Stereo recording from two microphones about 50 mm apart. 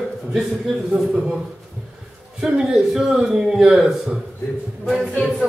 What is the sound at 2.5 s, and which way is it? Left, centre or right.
Speech, centre.